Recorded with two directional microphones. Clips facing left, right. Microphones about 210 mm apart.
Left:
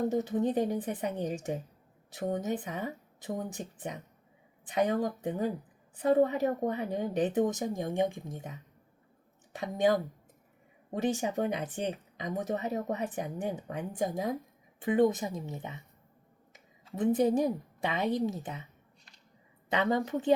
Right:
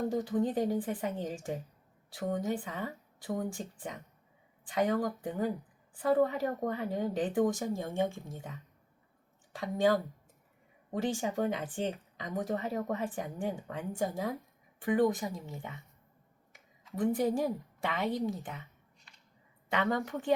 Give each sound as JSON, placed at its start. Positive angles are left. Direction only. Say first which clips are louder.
{"t": 0.1, "sound": "speech", "louder": "left 2 dB", "side_deg": 20}
{"t": 16.8, "sound": "speech", "louder": "left 3 dB", "side_deg": 20}
{"t": 19.7, "sound": "speech", "louder": "left 3 dB", "side_deg": 20}